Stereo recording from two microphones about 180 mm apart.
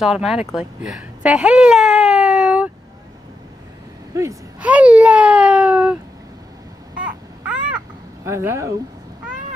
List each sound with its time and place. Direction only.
0.0 s speech: centre (ahead or behind)
1.2 s a sound: 5° right (ahead or behind)
4.1 s speech: 20° right (ahead or behind)
4.6 s baby cry: 10° right (ahead or behind)
7.0 s baby cry: 5° right (ahead or behind)
8.2 s speech: 15° right (ahead or behind)